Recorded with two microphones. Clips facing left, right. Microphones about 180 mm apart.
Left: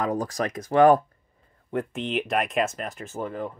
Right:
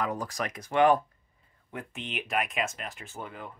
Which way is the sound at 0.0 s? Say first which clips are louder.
Left 6 dB; 45° left (ahead or behind).